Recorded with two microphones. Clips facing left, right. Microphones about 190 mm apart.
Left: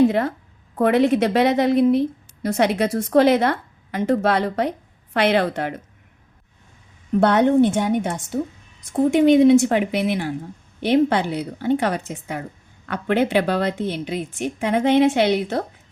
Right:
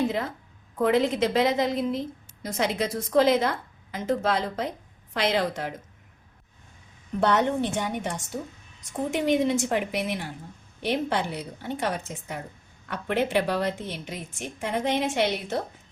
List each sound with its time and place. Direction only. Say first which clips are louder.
0.1 s a woman's voice: left 8 dB; 65° left (ahead or behind)
7.2 s a woman's voice: left 8 dB; 60° left (ahead or behind)
9.0 s a woman's voice: left 10 dB; 65° left (ahead or behind)